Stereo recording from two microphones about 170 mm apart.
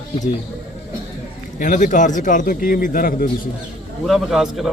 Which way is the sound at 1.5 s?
50° left (ahead or behind).